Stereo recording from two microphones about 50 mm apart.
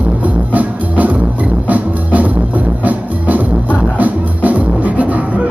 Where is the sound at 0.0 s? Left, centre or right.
Right.